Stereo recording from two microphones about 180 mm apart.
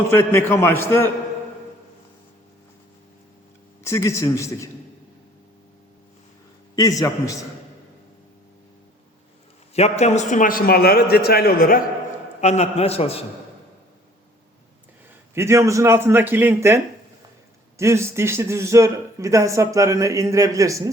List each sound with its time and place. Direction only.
0.1 s a man's voice: 15° left (ahead or behind)
3.8 s a man's voice: 15° left (ahead or behind)
6.7 s a man's voice: 20° left (ahead or behind)
9.7 s a man's voice: 35° left (ahead or behind); by 11.8 s 55° left (ahead or behind)
12.4 s a man's voice: 40° left (ahead or behind)
15.4 s a man's voice: 15° right (ahead or behind)